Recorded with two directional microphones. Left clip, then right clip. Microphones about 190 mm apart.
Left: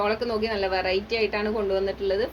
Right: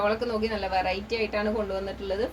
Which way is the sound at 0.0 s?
35° left (ahead or behind).